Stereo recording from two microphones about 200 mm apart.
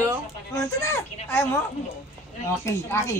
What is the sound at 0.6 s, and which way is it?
Speech, 10° left (ahead or behind).